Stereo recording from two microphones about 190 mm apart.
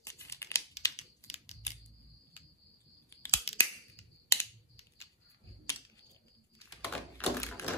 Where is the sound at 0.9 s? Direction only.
35° left (ahead or behind).